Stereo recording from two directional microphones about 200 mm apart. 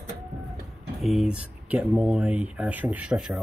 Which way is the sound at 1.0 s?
Centre (ahead or behind).